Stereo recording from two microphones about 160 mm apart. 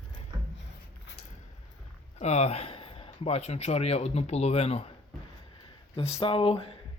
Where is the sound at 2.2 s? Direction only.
45° left (ahead or behind).